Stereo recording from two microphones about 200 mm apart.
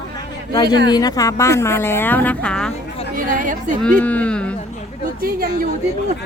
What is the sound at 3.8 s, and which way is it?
Speech, 5° left (ahead or behind).